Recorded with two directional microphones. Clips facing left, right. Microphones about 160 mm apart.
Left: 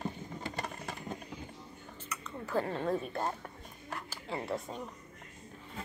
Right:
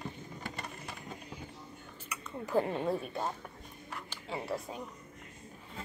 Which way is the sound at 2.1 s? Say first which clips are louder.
Right 3 dB; 10° right (ahead or behind).